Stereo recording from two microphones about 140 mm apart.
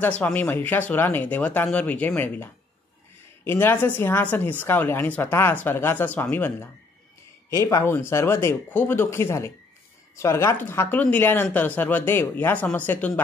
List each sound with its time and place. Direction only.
0.2 s a woman's voice: 10° left (ahead or behind)